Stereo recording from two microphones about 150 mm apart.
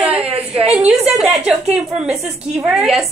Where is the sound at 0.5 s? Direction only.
45° right (ahead or behind).